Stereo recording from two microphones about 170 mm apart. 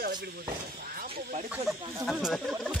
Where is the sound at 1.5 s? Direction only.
Centre (ahead or behind).